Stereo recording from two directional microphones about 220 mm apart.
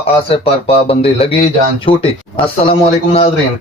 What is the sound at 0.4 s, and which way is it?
Speech, 25° left (ahead or behind).